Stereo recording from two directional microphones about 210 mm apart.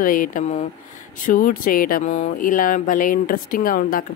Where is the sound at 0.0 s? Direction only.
40° left (ahead or behind).